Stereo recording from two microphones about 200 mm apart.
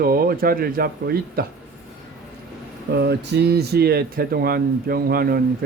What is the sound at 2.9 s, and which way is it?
Speech, 55° right (ahead or behind).